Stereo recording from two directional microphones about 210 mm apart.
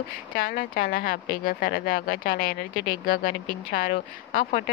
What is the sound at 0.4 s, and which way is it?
Speech, 45° left (ahead or behind).